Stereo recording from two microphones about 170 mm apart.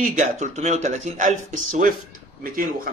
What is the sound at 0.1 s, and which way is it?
A man's voice, 45° right (ahead or behind).